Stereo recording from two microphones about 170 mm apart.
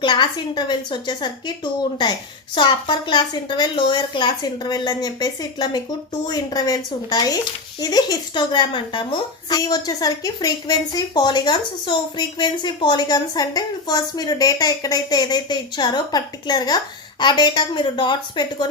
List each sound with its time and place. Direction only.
0.0 s speech: 25° left (ahead or behind)
2.6 s speech: 25° left (ahead or behind)